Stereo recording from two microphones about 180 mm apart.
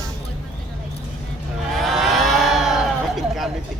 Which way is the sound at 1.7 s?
Centre (ahead or behind).